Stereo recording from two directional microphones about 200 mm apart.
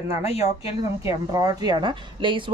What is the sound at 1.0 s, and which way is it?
A woman's voice, 15° right (ahead or behind).